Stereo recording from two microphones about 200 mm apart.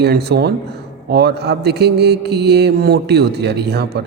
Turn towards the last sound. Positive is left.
turn(degrees=-55)  # may be behind; listen again after turning